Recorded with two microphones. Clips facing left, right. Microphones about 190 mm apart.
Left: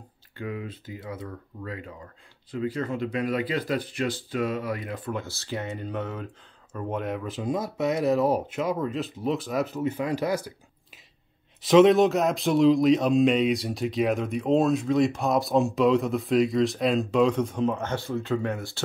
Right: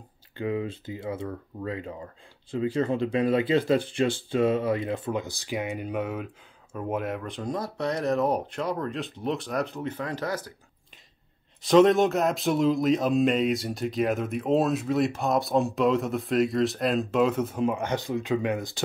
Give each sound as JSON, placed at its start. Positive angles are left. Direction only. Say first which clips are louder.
{"t": 0.4, "sound": "speech", "louder": "right 5 dB", "side_deg": -25}
{"t": 11.6, "sound": "speech", "louder": "left 2 dB", "side_deg": 0}